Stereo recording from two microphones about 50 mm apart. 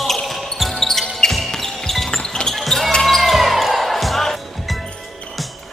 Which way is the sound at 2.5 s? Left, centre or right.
Centre.